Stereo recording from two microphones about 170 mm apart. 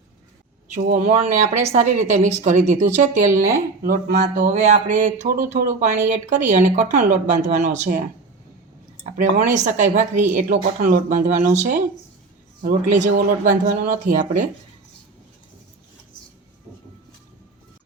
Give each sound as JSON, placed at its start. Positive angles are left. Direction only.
{"t": 0.7, "sound": "speech", "side_deg": -45}
{"t": 9.1, "sound": "speech", "side_deg": -50}